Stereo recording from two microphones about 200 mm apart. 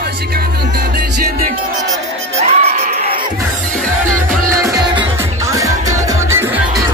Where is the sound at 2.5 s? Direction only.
35° right (ahead or behind).